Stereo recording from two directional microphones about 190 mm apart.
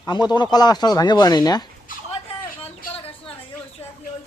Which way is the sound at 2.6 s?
30° left (ahead or behind).